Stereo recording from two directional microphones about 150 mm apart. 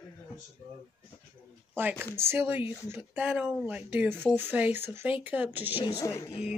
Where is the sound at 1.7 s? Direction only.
15° right (ahead or behind).